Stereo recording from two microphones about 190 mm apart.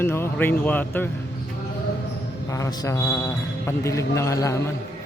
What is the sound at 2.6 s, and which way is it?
A man's voice, 15° left (ahead or behind).